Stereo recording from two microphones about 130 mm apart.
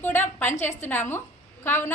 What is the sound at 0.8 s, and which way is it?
A woman's voice, 15° left (ahead or behind).